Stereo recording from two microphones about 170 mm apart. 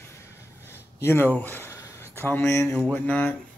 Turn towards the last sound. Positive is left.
turn(degrees=10)  # may be behind; listen again after turning